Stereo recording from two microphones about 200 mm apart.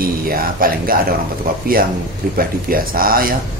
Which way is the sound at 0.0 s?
45° right (ahead or behind).